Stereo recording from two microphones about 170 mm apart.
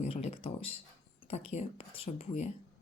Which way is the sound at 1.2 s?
35° left (ahead or behind).